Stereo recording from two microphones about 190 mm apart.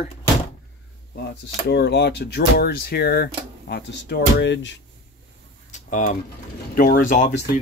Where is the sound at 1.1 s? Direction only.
60° left (ahead or behind).